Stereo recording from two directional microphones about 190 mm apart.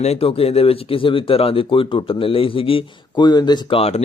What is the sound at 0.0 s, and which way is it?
Speech, 30° left (ahead or behind).